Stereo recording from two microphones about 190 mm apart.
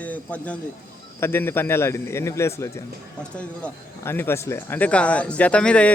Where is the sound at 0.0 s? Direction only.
5° left (ahead or behind).